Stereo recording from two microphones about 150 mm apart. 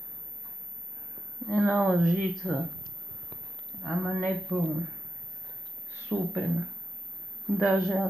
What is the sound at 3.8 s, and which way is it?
Speech, 5° right (ahead or behind).